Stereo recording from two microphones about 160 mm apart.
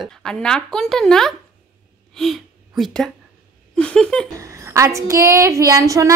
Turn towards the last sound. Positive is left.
turn(degrees=-20)  # may be behind; listen again after turning